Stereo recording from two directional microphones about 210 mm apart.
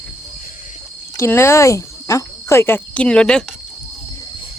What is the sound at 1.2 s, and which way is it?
Cricket, 10° left (ahead or behind).